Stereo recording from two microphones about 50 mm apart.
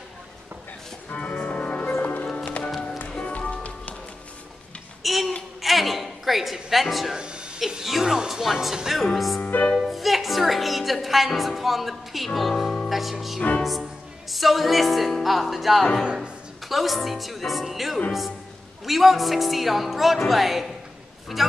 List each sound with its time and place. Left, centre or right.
1.1 s music: left
2.2 s music: centre
5.0 s a sound: centre
7.2 s a sound: centre
7.6 s speech: centre
9.4 s music: left
9.8 s a woman's voice: centre
12.9 s music: centre
14.3 s a woman's voice: centre